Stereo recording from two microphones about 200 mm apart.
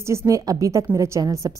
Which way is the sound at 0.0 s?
15° right (ahead or behind).